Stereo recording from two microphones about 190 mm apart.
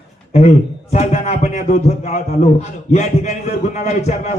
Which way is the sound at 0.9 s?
35° left (ahead or behind).